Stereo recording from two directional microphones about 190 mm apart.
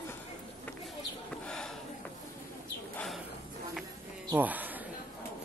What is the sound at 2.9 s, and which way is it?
Bird, 5° left (ahead or behind).